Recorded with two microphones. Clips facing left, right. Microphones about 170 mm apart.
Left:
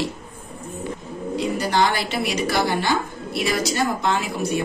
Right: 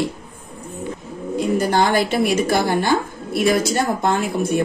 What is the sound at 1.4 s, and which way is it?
A woman's voice, 50° right (ahead or behind).